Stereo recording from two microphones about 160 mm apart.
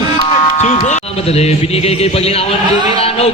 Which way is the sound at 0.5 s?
45° left (ahead or behind).